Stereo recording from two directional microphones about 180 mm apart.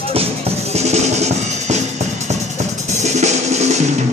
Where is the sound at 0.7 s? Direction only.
40° right (ahead or behind).